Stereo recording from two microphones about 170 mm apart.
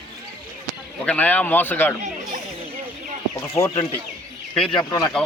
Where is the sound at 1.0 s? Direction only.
10° left (ahead or behind).